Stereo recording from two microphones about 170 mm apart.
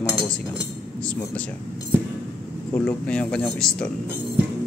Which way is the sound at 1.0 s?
5° left (ahead or behind).